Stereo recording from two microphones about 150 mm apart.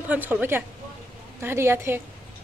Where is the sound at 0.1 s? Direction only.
15° right (ahead or behind).